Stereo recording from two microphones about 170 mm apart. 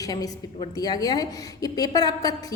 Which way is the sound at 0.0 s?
20° left (ahead or behind).